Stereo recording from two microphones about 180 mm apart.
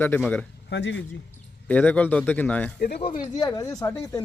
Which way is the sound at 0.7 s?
90° left.